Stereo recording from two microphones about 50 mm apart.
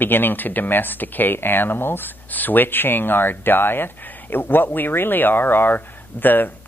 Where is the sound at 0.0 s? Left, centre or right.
Left.